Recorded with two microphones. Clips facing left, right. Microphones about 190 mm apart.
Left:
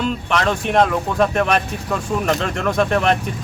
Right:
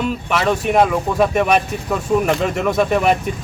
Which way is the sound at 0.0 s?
5° right (ahead or behind).